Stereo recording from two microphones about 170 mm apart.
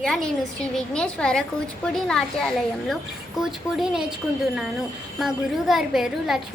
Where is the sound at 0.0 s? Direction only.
Centre (ahead or behind).